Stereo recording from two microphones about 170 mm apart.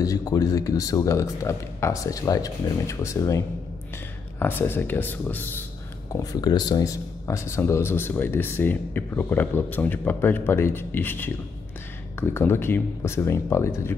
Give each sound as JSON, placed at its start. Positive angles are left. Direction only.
{"t": 0.0, "sound": "speech", "side_deg": 20}
{"t": 6.1, "sound": "speech", "side_deg": 25}